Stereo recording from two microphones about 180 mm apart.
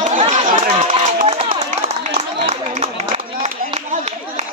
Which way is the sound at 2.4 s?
40° right (ahead or behind).